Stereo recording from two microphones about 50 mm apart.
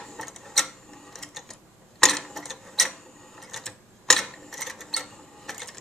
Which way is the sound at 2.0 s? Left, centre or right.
Centre.